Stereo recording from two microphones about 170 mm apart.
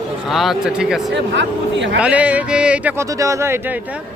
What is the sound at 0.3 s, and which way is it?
Speech, centre (ahead or behind).